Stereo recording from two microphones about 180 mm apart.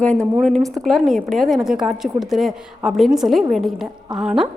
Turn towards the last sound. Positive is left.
turn(degrees=-5)  # may be behind; listen again after turning